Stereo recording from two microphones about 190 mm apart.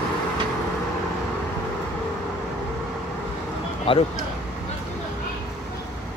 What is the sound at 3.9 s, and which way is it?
Speech, 25° left (ahead or behind).